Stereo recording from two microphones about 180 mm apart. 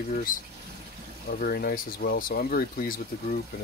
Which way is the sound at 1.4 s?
55° left (ahead or behind).